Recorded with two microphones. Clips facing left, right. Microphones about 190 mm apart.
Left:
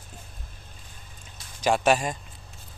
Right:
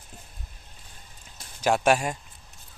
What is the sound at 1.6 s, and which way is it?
Speech, 10° right (ahead or behind).